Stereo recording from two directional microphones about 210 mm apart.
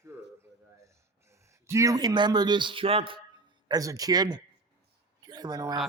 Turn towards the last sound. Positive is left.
turn(degrees=-20)  # may be behind; listen again after turning